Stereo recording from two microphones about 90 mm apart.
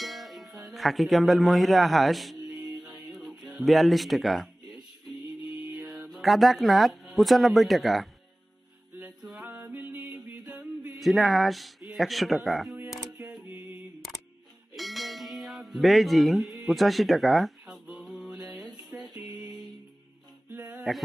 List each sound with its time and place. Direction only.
0.0 s speech: centre (ahead or behind)
2.6 s music: 10° right (ahead or behind)
3.1 s speech: centre (ahead or behind)
5.9 s speech: 5° right (ahead or behind)
9.2 s music: 10° right (ahead or behind)
9.8 s music: 20° right (ahead or behind)
11.0 s speech: centre (ahead or behind)
13.5 s a sound: 20° right (ahead or behind)
14.8 s a sound: centre (ahead or behind)
17.8 s mantra: 5° right (ahead or behind)
18.8 s music: 5° right (ahead or behind)
20.5 s music: 20° right (ahead or behind)